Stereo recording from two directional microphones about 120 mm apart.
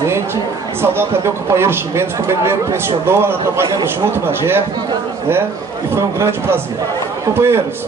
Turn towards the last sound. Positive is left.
turn(degrees=-20)  # may be behind; listen again after turning